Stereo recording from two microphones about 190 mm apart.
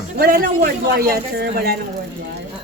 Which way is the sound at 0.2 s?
50° right (ahead or behind).